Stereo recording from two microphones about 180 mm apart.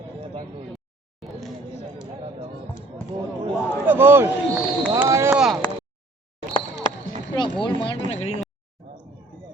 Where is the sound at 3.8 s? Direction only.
10° right (ahead or behind).